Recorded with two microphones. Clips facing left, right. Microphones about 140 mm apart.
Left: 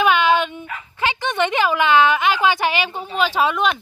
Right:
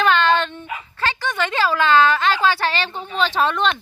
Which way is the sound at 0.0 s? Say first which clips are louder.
Left 1 dB; 10° left (ahead or behind).